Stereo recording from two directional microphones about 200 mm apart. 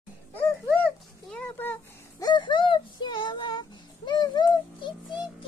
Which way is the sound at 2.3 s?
25° left (ahead or behind).